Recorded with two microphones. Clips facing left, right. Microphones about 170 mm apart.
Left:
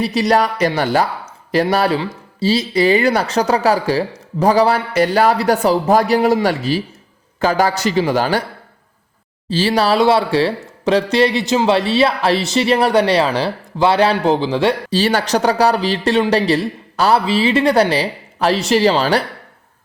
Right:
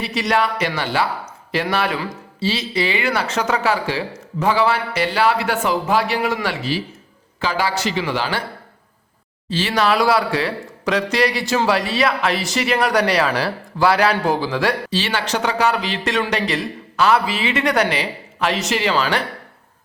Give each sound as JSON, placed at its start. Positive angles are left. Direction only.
{"t": 0.0, "sound": "speech", "side_deg": 35}
{"t": 9.5, "sound": "speech", "side_deg": 30}
{"t": 14.8, "sound": "speech", "side_deg": 40}